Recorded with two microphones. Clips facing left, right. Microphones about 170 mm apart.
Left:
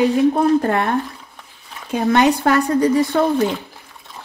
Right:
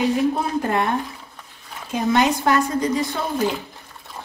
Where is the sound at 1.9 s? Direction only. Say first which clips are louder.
Left 4 dB; 60° left (ahead or behind).